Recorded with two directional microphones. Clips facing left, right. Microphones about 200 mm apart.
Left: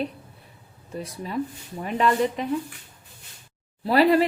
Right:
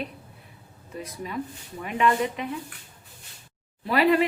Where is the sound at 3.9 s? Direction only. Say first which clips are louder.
Left 3 dB; 35° left (ahead or behind).